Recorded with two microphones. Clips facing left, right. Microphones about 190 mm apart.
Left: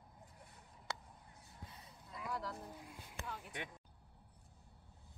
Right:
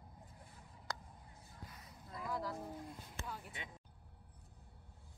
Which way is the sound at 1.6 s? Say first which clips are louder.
Right 1 dB; 30° left (ahead or behind).